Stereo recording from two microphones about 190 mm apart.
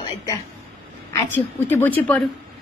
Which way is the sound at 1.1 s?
15° left (ahead or behind).